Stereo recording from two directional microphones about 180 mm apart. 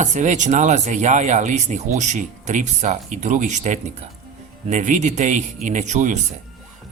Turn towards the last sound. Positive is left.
turn(degrees=-40)  # may be behind; listen again after turning